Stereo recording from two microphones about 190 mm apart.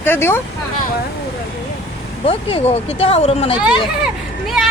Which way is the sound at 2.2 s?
30° left (ahead or behind).